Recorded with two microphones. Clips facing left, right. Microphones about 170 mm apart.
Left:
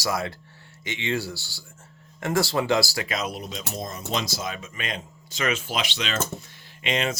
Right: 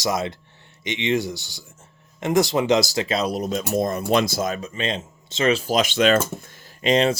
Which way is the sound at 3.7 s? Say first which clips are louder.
Right 10 dB; 60° right (ahead or behind).